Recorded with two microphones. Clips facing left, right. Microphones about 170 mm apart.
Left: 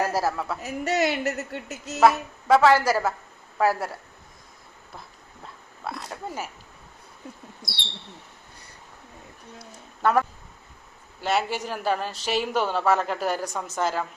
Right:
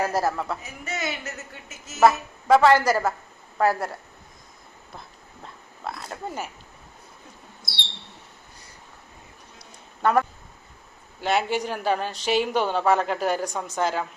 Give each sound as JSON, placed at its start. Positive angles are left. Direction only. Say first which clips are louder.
{"t": 0.0, "sound": "speech", "louder": "right 1 dB", "side_deg": 5}
{"t": 0.6, "sound": "a woman's voice", "louder": "left 8 dB", "side_deg": 70}
{"t": 2.0, "sound": "speech", "louder": "right 1 dB", "side_deg": 0}
{"t": 5.4, "sound": "pig", "louder": "right 1 dB", "side_deg": 0}
{"t": 9.6, "sound": "a sound", "louder": "right 1 dB", "side_deg": 0}
{"t": 11.2, "sound": "speech", "louder": "right 2 dB", "side_deg": 0}